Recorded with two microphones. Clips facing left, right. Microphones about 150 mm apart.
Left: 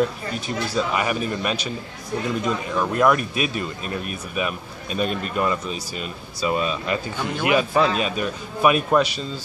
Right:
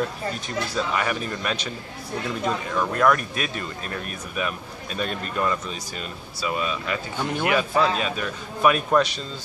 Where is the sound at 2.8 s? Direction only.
15° left (ahead or behind).